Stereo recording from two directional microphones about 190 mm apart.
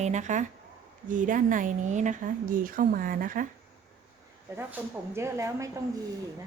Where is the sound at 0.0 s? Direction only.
40° right (ahead or behind).